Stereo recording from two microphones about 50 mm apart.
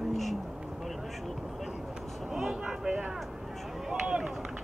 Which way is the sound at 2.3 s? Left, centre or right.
Centre.